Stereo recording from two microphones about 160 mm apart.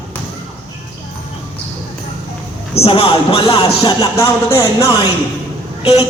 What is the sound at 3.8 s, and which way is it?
Speech, 20° left (ahead or behind).